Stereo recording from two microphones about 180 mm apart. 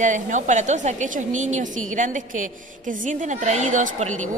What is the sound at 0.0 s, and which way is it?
A woman's voice, 45° right (ahead or behind).